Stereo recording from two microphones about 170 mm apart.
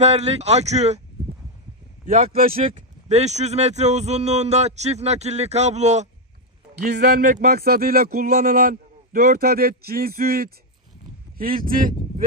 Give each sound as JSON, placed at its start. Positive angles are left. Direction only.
{"t": 0.0, "sound": "speech", "side_deg": -40}
{"t": 2.0, "sound": "speech", "side_deg": -40}
{"t": 6.9, "sound": "a man's voice", "side_deg": -65}